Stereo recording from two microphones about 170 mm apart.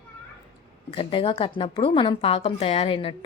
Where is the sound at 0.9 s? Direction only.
30° left (ahead or behind).